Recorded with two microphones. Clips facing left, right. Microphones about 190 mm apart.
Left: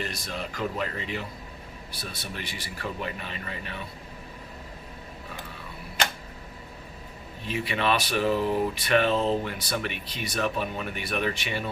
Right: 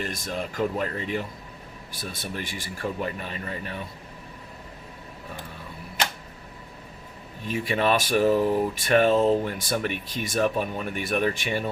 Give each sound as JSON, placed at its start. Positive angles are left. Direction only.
{"t": 0.0, "sound": "speech", "side_deg": -50}
{"t": 7.4, "sound": "speech", "side_deg": -45}